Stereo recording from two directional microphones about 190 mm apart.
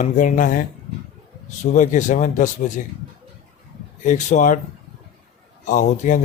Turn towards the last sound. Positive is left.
turn(degrees=40)  # may be behind; listen again after turning